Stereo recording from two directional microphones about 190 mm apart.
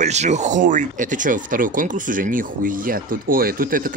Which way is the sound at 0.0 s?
35° right (ahead or behind).